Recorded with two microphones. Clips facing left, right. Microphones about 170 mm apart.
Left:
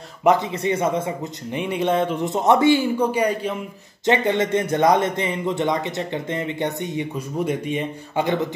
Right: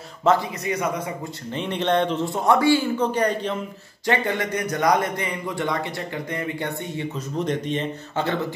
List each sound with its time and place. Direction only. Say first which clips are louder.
0.3 s speech: left 2 dB; 15° left (ahead or behind)
0.7 s speech: left 5 dB; 25° left (ahead or behind)
1.5 s speech: left 1 dB; 10° left (ahead or behind)
2.2 s speech: left 5 dB; 20° left (ahead or behind)
3.0 s speech: left 2 dB; 10° left (ahead or behind)
4.0 s speech: left 4 dB; 20° left (ahead or behind)